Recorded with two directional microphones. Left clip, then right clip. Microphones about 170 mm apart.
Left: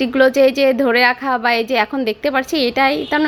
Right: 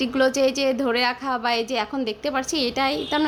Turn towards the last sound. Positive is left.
turn(degrees=15)  # may be behind; listen again after turning